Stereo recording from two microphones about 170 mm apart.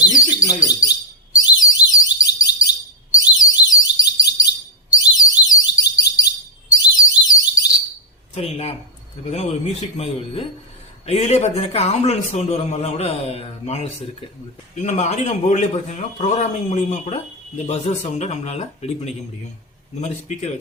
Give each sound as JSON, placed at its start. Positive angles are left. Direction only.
{"t": 0.1, "sound": "speech", "side_deg": 20}
{"t": 1.4, "sound": "alarm", "side_deg": 20}
{"t": 8.4, "sound": "a man's voice", "side_deg": 35}
{"t": 11.0, "sound": "a man's voice", "side_deg": 40}